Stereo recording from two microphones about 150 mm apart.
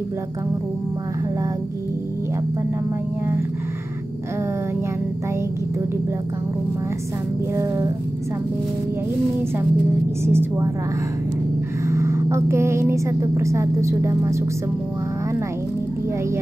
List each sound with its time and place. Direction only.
7.5 s speech: 20° right (ahead or behind)
10.2 s a woman's voice: 15° right (ahead or behind)
11.9 s speech: 20° right (ahead or behind)